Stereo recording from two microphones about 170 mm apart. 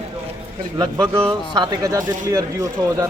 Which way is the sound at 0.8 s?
30° right (ahead or behind).